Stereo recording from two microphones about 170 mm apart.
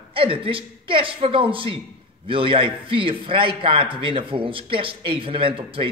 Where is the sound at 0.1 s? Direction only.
30° right (ahead or behind).